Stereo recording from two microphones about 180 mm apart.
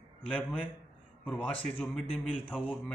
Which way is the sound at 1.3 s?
5° left (ahead or behind).